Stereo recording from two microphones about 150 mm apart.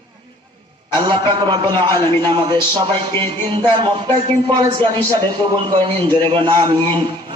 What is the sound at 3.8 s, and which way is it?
Speech, 45° right (ahead or behind).